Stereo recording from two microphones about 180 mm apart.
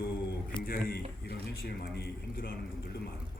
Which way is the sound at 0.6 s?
55° left (ahead or behind).